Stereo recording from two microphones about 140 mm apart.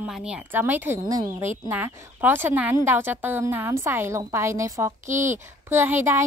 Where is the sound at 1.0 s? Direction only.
25° right (ahead or behind).